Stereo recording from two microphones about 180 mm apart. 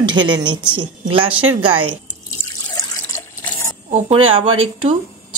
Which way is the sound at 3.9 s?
35° right (ahead or behind).